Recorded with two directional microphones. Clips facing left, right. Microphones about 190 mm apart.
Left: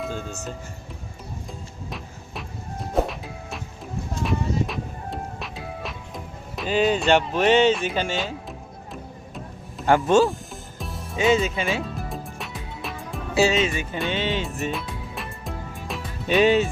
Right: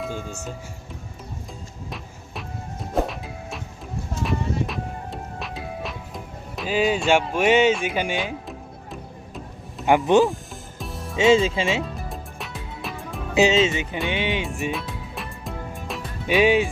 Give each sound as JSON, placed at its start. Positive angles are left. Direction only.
{"t": 0.0, "sound": "speech", "side_deg": -10}
{"t": 2.9, "sound": "music", "side_deg": 0}
{"t": 7.9, "sound": "speech", "side_deg": -15}
{"t": 8.2, "sound": "music", "side_deg": 0}
{"t": 11.2, "sound": "speech", "side_deg": -25}
{"t": 11.9, "sound": "music", "side_deg": 0}
{"t": 13.3, "sound": "speech", "side_deg": -20}
{"t": 14.7, "sound": "music", "side_deg": 0}
{"t": 16.2, "sound": "speech", "side_deg": -10}